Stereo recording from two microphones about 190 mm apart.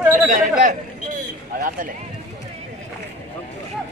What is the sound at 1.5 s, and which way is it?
Speech, 45° right (ahead or behind).